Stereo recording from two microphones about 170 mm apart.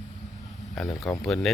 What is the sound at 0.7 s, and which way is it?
Speech, 10° left (ahead or behind).